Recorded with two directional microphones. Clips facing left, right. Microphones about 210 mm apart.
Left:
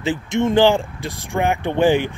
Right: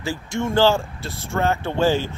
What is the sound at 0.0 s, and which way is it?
Speech, 20° left (ahead or behind).